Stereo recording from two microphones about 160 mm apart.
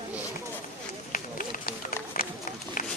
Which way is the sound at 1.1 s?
60° left (ahead or behind).